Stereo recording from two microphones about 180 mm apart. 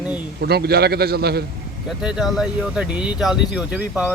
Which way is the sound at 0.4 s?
60° right (ahead or behind).